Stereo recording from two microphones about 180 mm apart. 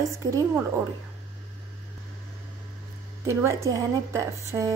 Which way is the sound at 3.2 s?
15° right (ahead or behind).